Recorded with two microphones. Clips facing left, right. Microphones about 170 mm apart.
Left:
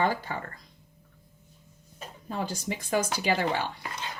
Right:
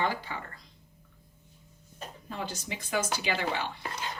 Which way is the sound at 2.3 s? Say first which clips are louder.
Left 5 dB; 45° left (ahead or behind).